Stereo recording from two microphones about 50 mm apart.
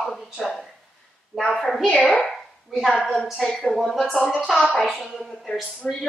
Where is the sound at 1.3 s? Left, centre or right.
Centre.